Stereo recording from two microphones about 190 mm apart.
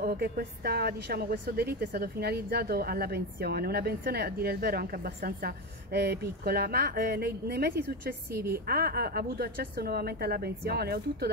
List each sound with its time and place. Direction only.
0.0 s a woman's voice: 55° right (ahead or behind)